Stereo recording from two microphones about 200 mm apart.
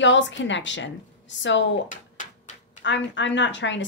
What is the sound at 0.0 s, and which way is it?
A woman's voice, 65° left (ahead or behind).